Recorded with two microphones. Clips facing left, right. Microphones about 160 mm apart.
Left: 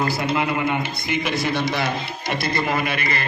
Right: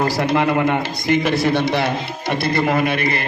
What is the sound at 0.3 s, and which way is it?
A man's voice, 55° right (ahead or behind).